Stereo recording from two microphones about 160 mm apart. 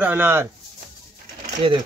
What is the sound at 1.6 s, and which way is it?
Speech, 35° right (ahead or behind).